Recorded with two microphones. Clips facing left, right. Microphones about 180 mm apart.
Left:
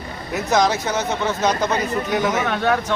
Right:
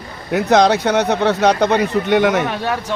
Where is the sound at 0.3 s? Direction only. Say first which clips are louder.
Right 6 dB; 70° right (ahead or behind).